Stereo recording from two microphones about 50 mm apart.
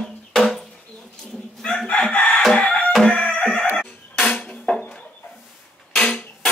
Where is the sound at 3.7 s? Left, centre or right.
Centre.